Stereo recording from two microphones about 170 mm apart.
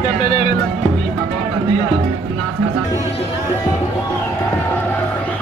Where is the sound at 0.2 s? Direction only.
40° left (ahead or behind).